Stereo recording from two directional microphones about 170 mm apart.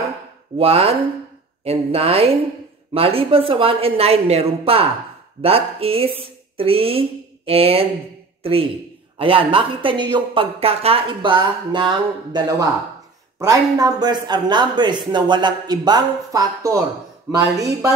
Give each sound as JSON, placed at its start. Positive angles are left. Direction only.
{"t": 0.6, "sound": "a woman's voice", "side_deg": -35}